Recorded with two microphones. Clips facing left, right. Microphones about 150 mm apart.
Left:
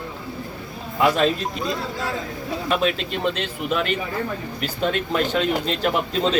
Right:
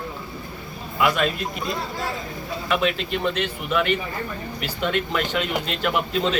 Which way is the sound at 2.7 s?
35° left (ahead or behind).